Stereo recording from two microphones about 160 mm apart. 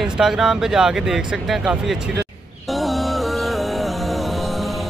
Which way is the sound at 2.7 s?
Centre (ahead or behind).